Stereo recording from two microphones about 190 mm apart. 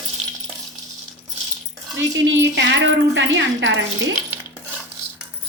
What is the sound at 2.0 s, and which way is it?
Speech, 80° right.